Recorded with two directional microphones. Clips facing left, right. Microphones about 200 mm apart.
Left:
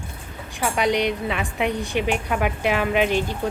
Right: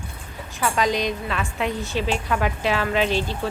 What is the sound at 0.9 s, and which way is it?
Speech, 70° left (ahead or behind).